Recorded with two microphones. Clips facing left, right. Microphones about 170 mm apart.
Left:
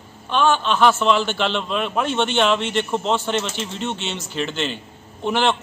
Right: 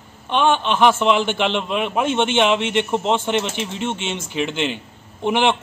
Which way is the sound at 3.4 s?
60° right (ahead or behind).